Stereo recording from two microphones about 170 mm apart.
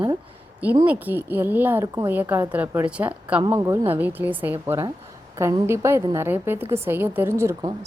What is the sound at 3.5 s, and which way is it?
A woman's voice, 20° right (ahead or behind).